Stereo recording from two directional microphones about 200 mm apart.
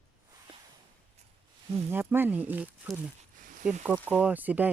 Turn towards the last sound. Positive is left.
turn(degrees=-10)  # may be behind; listen again after turning